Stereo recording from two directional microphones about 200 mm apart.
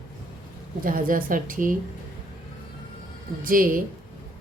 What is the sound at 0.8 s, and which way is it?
Speech, 45° right (ahead or behind).